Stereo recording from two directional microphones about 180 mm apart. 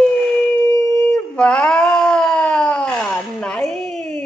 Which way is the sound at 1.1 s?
5° left (ahead or behind).